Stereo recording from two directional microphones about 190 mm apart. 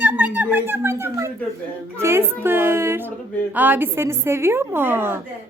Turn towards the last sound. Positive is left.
turn(degrees=-10)  # may be behind; listen again after turning